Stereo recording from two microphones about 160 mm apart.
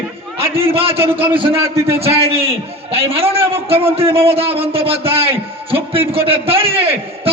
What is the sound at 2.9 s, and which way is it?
Speech, 35° right (ahead or behind).